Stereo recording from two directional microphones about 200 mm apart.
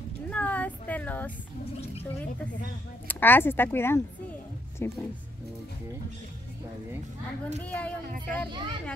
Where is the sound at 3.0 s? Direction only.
10° left (ahead or behind).